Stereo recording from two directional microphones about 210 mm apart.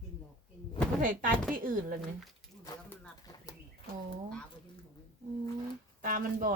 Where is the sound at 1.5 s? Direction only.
40° right (ahead or behind).